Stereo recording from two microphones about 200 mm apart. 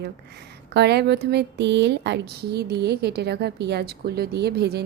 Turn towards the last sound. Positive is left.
turn(degrees=-55)  # may be behind; listen again after turning